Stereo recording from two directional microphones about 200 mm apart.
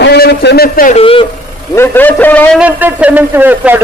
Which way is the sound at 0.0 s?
55° left (ahead or behind).